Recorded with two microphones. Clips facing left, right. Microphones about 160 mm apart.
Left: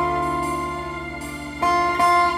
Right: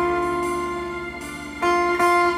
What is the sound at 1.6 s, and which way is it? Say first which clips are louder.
Music: right 1 dB; 30° left (ahead or behind).